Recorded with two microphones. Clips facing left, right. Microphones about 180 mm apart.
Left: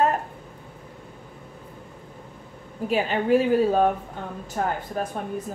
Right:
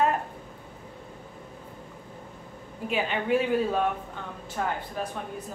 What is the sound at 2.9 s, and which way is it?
A woman's voice, 40° left (ahead or behind).